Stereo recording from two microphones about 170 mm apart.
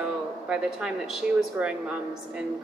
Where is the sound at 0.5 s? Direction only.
5° right (ahead or behind).